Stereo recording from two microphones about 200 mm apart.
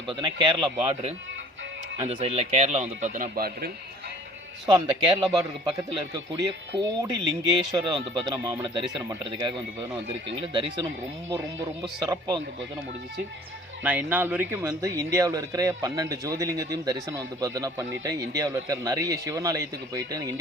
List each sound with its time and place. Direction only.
0.1 s speech: 25° right (ahead or behind); by 3.7 s 50° right (ahead or behind)
4.7 s speech: 25° right (ahead or behind)
13.8 s speech: 10° right (ahead or behind)